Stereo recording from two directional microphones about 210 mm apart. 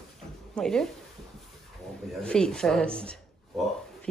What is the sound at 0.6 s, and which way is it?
Speech, 5° left (ahead or behind).